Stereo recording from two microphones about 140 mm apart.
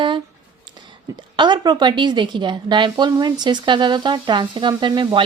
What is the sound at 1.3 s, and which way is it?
A woman's voice, 30° right (ahead or behind).